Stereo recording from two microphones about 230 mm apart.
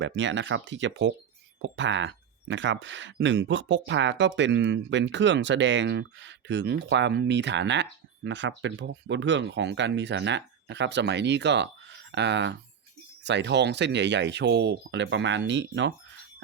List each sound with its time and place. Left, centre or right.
0.0 s speech: right